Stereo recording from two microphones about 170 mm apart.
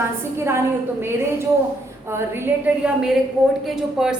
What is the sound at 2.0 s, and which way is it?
A woman's voice, 15° right (ahead or behind).